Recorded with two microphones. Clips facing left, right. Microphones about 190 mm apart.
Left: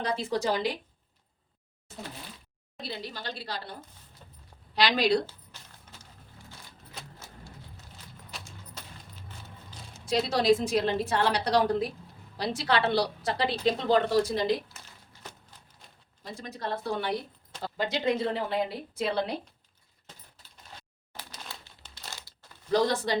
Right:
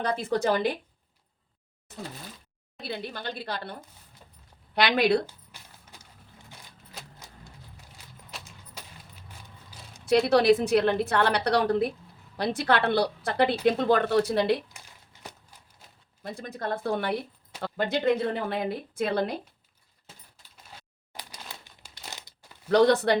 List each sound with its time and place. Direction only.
0.0 s a woman's voice: 55° right (ahead or behind)
2.8 s a woman's voice: 55° right (ahead or behind)
5.2 s a sound: 10° right (ahead or behind)
7.2 s a sound: 15° right (ahead or behind)
10.1 s a woman's voice: 65° right (ahead or behind)
15.2 s a sound: 10° right (ahead or behind)
16.2 s a woman's voice: 50° right (ahead or behind)
21.1 s crumpling: 10° right (ahead or behind)
22.7 s a woman's voice: 65° right (ahead or behind)